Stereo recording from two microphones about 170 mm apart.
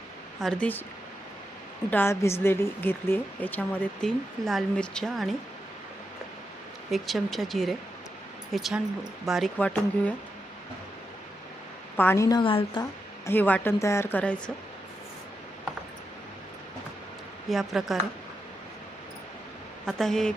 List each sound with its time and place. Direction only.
0.3 s speech: 5° left (ahead or behind)
1.9 s speech: 15° left (ahead or behind)
6.9 s speech: centre (ahead or behind)
11.9 s speech: 15° left (ahead or behind)
12.4 s a woman's voice: 30° left (ahead or behind)
13.2 s speech: 10° left (ahead or behind)
17.5 s speech: centre (ahead or behind)
19.8 s speech: 5° left (ahead or behind)